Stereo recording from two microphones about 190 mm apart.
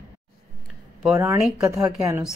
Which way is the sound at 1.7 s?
15° right (ahead or behind).